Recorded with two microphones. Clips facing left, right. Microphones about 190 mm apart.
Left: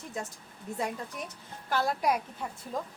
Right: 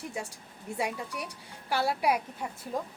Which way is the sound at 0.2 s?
10° right (ahead or behind).